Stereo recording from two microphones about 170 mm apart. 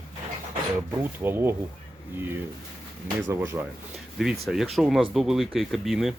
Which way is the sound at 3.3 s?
15° right (ahead or behind).